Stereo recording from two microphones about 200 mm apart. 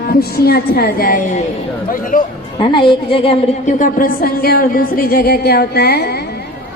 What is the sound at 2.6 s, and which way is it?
A woman's voice, 25° left (ahead or behind).